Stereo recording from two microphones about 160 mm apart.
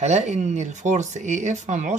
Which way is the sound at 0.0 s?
45° right (ahead or behind).